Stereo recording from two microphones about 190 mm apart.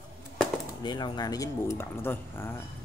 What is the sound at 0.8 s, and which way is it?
Speech, 20° left (ahead or behind).